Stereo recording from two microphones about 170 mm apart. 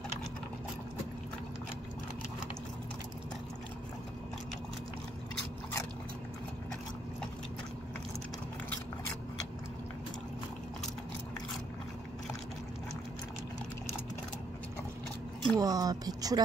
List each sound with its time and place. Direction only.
15.4 s speech: 20° right (ahead or behind)